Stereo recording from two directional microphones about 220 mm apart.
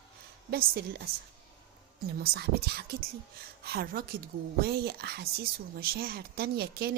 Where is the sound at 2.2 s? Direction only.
45° right (ahead or behind).